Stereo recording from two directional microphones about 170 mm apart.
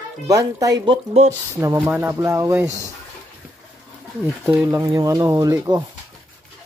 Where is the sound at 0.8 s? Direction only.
40° right (ahead or behind).